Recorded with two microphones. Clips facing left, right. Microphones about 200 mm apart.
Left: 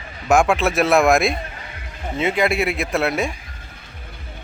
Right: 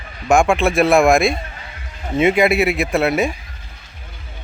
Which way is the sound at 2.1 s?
15° right (ahead or behind).